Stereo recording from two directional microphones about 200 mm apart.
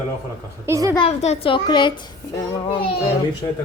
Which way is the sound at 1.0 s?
30° left (ahead or behind).